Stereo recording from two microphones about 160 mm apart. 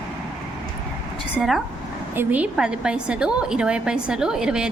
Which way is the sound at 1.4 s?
Centre (ahead or behind).